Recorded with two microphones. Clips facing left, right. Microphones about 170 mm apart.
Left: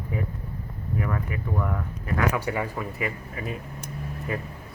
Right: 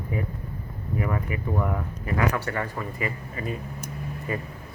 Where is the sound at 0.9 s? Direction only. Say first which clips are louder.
Right 1 dB; 5° right (ahead or behind).